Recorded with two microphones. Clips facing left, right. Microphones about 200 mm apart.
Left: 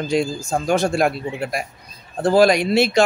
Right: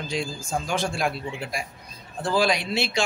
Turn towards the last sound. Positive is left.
turn(degrees=55)  # may be behind; listen again after turning